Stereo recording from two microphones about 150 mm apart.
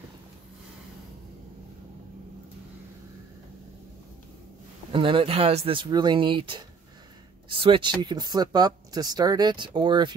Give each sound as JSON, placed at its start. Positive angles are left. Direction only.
{"t": 4.9, "sound": "speech", "side_deg": -35}